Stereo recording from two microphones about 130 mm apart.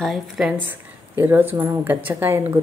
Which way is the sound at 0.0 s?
Centre (ahead or behind).